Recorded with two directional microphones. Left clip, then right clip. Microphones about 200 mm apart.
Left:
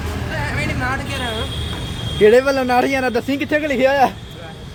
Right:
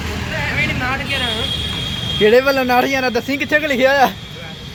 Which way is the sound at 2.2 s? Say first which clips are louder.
Even; 15° left (ahead or behind).